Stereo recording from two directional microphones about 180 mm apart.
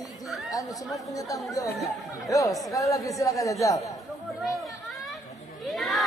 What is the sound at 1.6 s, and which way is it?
Speech, 60° left (ahead or behind).